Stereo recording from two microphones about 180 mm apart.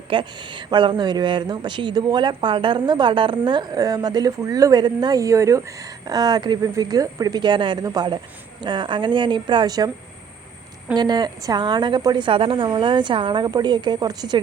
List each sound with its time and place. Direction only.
0.1 s speech: 25° right (ahead or behind)
10.9 s speech: 25° right (ahead or behind)